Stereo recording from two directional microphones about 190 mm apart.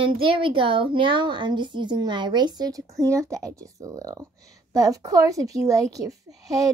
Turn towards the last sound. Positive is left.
turn(degrees=-20)  # may be behind; listen again after turning